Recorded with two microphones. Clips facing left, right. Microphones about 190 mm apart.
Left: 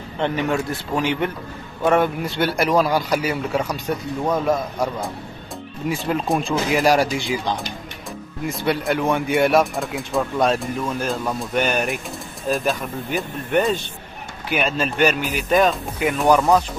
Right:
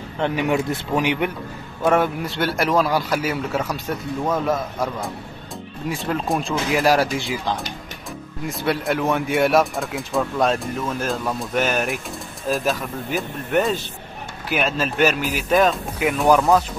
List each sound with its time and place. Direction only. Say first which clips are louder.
0.2 s speech: right 1 dB; 10° right (ahead or behind)
1.8 s speech: left 1 dB; centre (ahead or behind)